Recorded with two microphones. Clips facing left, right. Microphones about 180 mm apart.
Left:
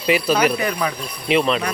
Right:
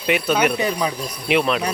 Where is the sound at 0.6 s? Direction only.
20° right (ahead or behind).